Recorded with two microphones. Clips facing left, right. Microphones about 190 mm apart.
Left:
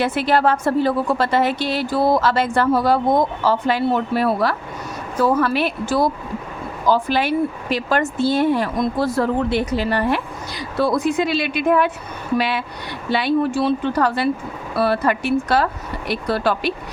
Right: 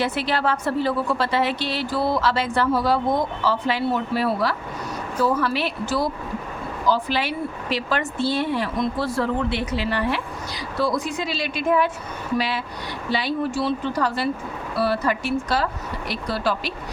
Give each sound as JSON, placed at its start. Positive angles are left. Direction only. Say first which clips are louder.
{"t": 0.0, "sound": "a woman's voice", "louder": "left 5 dB", "side_deg": 50}